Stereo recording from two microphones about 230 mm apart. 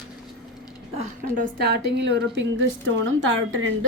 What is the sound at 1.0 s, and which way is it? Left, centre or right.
A woman's voice, right.